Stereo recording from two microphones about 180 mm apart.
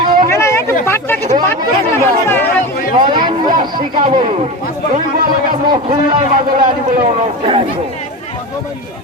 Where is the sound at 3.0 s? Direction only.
25° right (ahead or behind).